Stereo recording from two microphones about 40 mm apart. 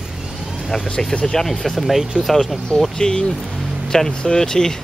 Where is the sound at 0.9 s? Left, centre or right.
Centre.